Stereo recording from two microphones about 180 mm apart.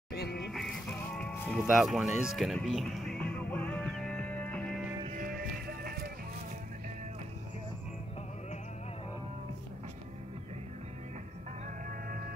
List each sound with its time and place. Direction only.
0.1 s music: 65° left (ahead or behind)
0.5 s music: centre (ahead or behind)
5.2 s music: 55° right (ahead or behind)